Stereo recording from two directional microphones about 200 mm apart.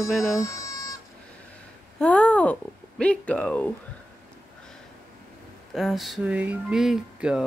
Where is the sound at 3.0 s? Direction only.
5° left (ahead or behind).